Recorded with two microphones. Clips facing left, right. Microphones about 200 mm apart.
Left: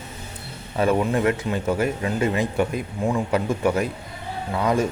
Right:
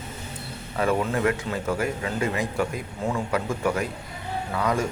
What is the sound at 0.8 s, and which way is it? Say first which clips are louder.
A man's voice: left 3 dB; 25° left (ahead or behind).